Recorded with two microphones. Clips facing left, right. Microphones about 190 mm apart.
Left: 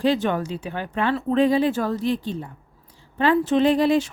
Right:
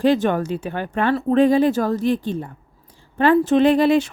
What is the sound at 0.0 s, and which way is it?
Speech, 50° right (ahead or behind).